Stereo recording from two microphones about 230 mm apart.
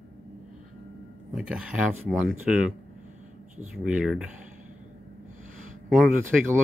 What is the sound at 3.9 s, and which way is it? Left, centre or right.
Speech, centre.